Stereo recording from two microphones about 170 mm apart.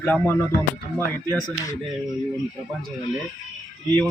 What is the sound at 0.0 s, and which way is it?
Speech, 10° left (ahead or behind).